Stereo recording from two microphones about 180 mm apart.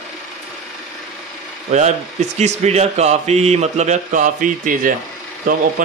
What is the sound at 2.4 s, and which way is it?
Speech, 40° right (ahead or behind).